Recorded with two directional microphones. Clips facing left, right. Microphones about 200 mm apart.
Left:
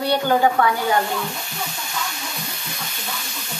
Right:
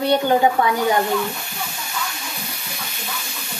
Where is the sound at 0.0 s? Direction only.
20° right (ahead or behind).